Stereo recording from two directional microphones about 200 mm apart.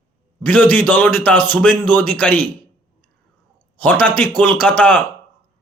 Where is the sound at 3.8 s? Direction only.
5° left (ahead or behind).